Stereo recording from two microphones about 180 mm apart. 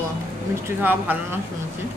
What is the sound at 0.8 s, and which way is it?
Speech, 10° right (ahead or behind).